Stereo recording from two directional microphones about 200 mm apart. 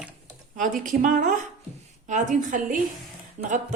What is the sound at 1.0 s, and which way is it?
A woman's voice, 40° right (ahead or behind).